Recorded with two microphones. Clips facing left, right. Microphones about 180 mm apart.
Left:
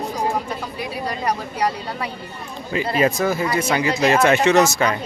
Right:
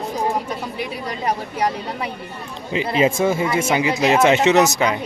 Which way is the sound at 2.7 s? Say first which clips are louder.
Right 1 dB; 20° right (ahead or behind).